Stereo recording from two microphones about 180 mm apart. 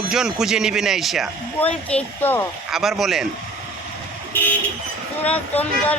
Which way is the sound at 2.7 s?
Centre (ahead or behind).